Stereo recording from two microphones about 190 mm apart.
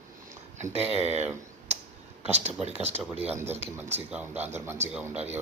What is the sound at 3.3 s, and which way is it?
Speech, 10° right (ahead or behind).